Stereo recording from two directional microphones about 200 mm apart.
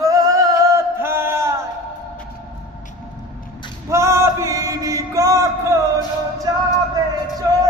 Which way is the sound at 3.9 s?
15° right (ahead or behind).